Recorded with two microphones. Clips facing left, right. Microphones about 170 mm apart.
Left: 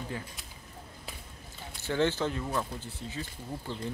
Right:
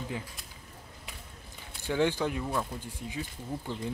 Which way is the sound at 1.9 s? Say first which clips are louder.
Right 1 dB; 15° right (ahead or behind).